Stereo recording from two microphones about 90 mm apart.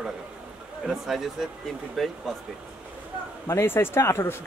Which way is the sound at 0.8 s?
5° right (ahead or behind).